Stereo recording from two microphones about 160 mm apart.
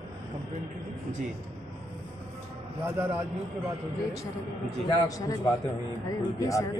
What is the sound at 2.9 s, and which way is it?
Speech, 15° right (ahead or behind).